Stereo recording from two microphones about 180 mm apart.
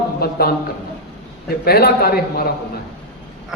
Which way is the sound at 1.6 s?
60° left (ahead or behind).